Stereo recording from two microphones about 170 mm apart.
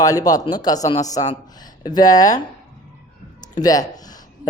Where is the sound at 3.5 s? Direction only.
20° left (ahead or behind).